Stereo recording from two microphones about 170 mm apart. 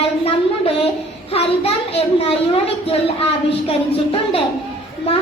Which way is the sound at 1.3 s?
35° left (ahead or behind).